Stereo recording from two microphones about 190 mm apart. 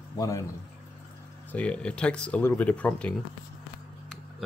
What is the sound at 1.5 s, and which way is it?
Speech, 5° left (ahead or behind).